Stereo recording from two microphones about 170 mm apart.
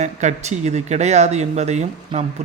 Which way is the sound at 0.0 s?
45° right (ahead or behind).